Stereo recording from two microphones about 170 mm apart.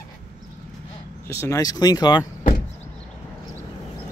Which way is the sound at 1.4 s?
20° left (ahead or behind).